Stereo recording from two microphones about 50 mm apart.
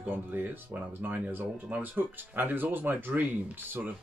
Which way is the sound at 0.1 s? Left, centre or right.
Right.